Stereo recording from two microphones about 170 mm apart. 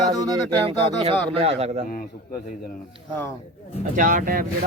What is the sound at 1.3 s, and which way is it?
Speech, 35° right (ahead or behind).